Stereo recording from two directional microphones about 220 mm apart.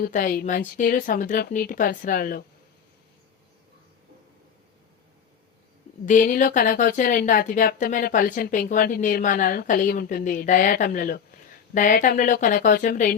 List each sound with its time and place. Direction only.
0.0 s speech: 40° left (ahead or behind)
6.1 s speech: 40° left (ahead or behind)